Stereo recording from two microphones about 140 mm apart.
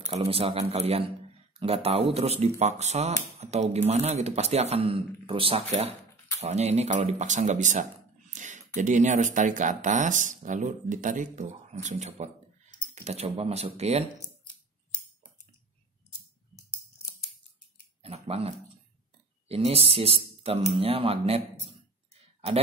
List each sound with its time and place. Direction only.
0.0 s speech: 45° right (ahead or behind)
18.0 s a sound: 45° right (ahead or behind)
19.4 s speech: 45° right (ahead or behind)